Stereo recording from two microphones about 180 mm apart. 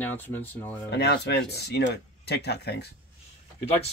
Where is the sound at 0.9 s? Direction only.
70° left (ahead or behind).